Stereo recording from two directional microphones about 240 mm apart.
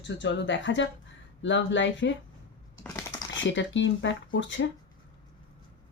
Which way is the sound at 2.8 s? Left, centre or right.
Centre.